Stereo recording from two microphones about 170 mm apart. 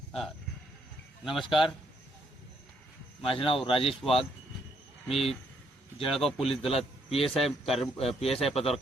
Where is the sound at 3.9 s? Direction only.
Centre (ahead or behind).